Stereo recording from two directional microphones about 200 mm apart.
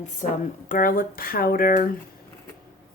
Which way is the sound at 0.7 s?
45° left (ahead or behind).